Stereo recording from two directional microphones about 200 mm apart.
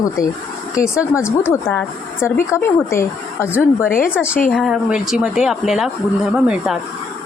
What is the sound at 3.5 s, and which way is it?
Speech, 5° right (ahead or behind).